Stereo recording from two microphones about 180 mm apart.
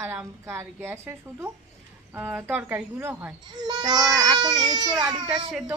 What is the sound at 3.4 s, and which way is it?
Speech, 25° right (ahead or behind).